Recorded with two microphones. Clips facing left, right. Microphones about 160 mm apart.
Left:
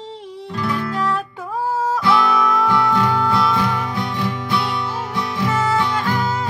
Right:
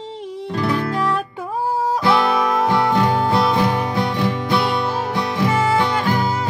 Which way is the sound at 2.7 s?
25° right (ahead or behind).